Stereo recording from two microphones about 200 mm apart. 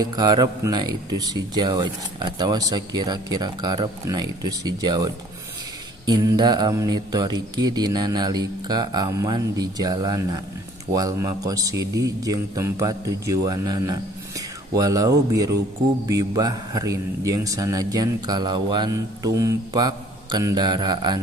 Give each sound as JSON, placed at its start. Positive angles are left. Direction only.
{"t": 0.0, "sound": "a man's voice", "side_deg": -20}